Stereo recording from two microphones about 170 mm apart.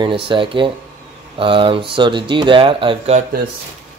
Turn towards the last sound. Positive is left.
turn(degrees=-30)  # may be behind; listen again after turning